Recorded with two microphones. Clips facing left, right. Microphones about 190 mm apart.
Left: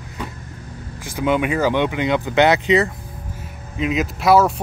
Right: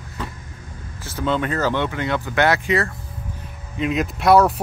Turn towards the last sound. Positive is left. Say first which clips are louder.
# even
turn(degrees=0)  # may be behind; listen again after turning